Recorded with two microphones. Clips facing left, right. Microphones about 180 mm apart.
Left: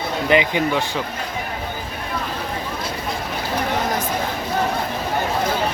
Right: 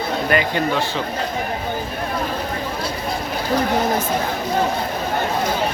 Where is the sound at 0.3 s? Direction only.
20° left (ahead or behind).